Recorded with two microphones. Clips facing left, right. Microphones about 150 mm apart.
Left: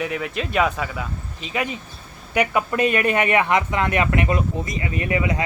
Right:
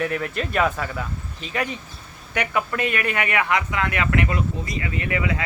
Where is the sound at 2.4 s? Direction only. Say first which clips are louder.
Left 4 dB; 25° left (ahead or behind).